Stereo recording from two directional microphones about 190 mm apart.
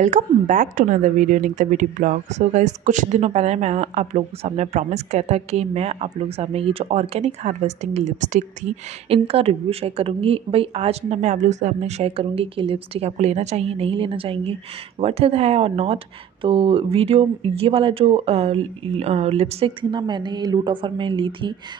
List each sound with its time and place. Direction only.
0.0 s a woman's voice: 40° right (ahead or behind); by 21.5 s 25° right (ahead or behind)